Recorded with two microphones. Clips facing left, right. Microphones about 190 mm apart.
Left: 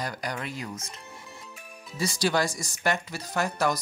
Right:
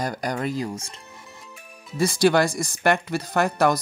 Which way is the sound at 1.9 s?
55° right (ahead or behind).